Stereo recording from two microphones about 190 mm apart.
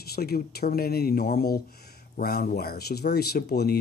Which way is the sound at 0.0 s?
55° left (ahead or behind).